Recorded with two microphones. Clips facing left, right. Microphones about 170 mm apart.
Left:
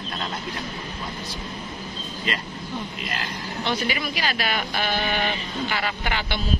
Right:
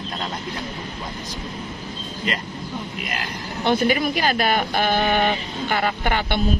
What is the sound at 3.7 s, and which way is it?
Speech, 50° right (ahead or behind).